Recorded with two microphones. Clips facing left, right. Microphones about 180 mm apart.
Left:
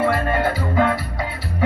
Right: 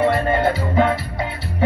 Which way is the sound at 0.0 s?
20° right (ahead or behind).